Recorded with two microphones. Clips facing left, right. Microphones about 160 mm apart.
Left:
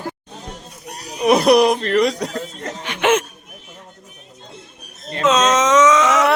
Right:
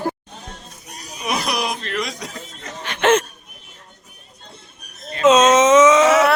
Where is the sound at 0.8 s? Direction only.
70° left (ahead or behind).